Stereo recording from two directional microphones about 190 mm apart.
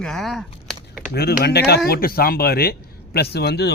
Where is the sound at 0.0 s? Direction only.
Centre (ahead or behind).